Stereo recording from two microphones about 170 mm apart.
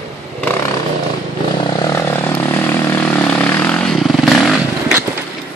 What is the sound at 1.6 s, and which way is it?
Vehicle, 25° left (ahead or behind).